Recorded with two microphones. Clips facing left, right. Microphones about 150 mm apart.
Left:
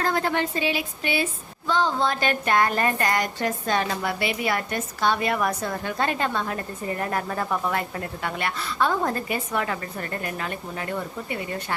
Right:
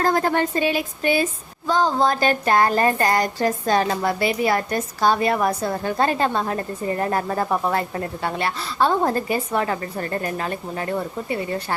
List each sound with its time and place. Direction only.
0.0 s a woman's voice: 40° right (ahead or behind)